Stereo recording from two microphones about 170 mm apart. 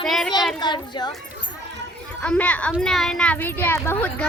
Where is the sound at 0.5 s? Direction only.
25° left (ahead or behind).